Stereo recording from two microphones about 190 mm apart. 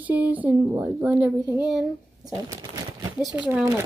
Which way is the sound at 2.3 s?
20° right (ahead or behind).